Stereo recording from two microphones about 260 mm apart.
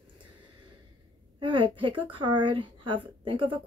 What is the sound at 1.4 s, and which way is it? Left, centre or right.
Speech, centre.